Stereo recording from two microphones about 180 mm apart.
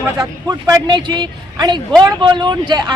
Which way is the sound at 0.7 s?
25° right (ahead or behind).